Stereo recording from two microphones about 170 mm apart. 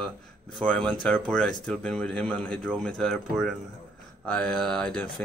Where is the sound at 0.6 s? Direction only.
5° left (ahead or behind).